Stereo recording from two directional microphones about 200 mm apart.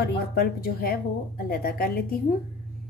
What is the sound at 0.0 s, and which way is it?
A woman's voice, 50° left (ahead or behind).